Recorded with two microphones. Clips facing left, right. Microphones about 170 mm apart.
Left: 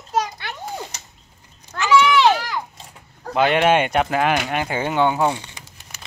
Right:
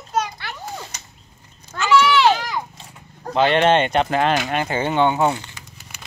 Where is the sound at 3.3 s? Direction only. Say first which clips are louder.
Right 1 dB; 10° left (ahead or behind).